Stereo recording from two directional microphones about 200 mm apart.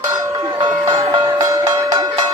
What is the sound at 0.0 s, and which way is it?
Cowbell, 15° right (ahead or behind).